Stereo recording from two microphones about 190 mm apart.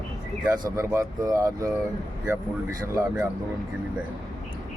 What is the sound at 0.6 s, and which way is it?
Speech, 15° right (ahead or behind).